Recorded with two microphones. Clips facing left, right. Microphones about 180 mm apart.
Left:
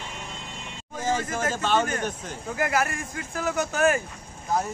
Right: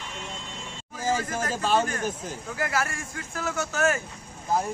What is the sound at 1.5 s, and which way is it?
Speech, 5° right (ahead or behind).